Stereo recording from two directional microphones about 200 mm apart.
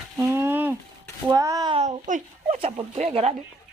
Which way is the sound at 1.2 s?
15° right (ahead or behind).